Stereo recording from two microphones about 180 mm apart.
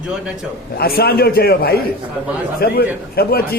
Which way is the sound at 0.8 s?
60° left (ahead or behind).